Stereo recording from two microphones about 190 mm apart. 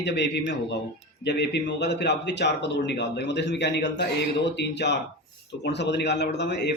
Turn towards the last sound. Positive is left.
turn(degrees=65)  # may be behind; listen again after turning